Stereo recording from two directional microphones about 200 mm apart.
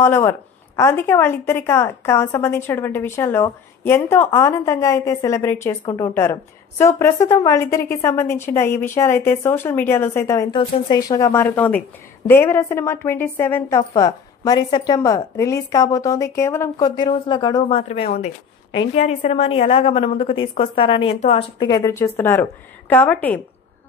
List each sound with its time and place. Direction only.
0.0 s a woman's voice: 10° left (ahead or behind)